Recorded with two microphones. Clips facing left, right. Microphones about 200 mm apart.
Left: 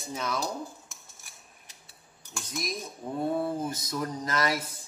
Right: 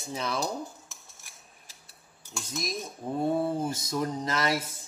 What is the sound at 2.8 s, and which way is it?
A man's voice, 30° right (ahead or behind).